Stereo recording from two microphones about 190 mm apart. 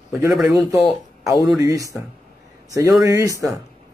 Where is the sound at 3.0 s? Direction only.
15° right (ahead or behind).